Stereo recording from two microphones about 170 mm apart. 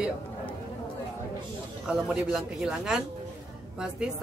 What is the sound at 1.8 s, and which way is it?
A man's voice, 5° right (ahead or behind).